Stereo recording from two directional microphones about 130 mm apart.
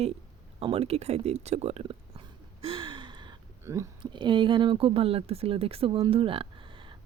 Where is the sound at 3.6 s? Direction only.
20° right (ahead or behind).